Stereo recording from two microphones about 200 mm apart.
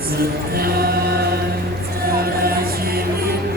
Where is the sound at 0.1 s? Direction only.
50° right (ahead or behind).